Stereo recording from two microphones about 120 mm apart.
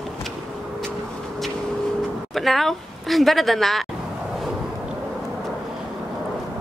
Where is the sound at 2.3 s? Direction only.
Centre (ahead or behind).